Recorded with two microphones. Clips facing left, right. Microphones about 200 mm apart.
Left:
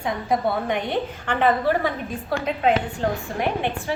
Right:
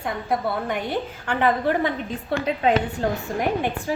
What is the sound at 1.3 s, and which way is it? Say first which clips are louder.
Speech: left 1 dB; 15° right (ahead or behind).